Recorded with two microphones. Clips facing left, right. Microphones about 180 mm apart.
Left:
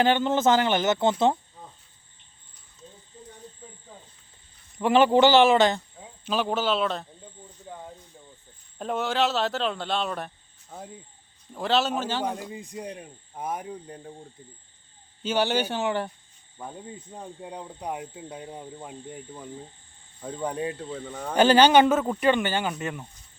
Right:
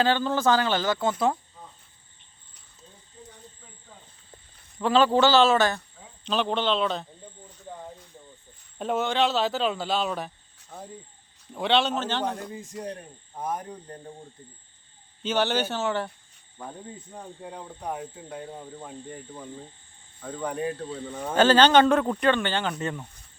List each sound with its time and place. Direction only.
0.0 s speech: 20° left (ahead or behind)
4.8 s a man's voice: 15° left (ahead or behind)
6.2 s speech: 5° left (ahead or behind)
8.8 s a man's voice: centre (ahead or behind)
15.2 s a man's voice: 10° left (ahead or behind)
17.5 s a man's voice: 15° left (ahead or behind)
20.3 s a man's voice: 25° left (ahead or behind)